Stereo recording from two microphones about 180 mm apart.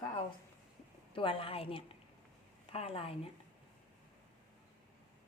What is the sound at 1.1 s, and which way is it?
A woman's voice, 30° left (ahead or behind).